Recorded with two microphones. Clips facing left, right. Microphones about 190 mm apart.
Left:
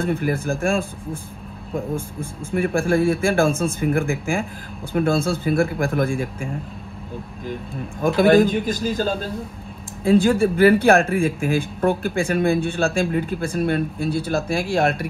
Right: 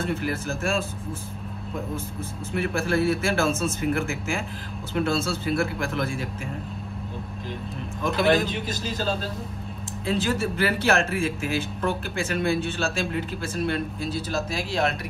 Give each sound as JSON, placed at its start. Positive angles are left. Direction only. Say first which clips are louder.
{"t": 0.0, "sound": "speech", "louder": "left 5 dB", "side_deg": 55}
{"t": 2.5, "sound": "speech", "louder": "left 5 dB", "side_deg": 50}
{"t": 8.0, "sound": "speech", "louder": "left 7 dB", "side_deg": 50}